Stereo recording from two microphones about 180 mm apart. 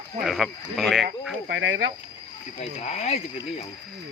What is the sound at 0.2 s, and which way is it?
Speech, centre (ahead or behind).